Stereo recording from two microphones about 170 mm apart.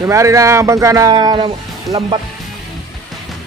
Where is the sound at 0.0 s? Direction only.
15° right (ahead or behind).